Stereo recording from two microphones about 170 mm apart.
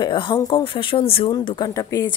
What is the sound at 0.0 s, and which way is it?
Speech, 30° left (ahead or behind).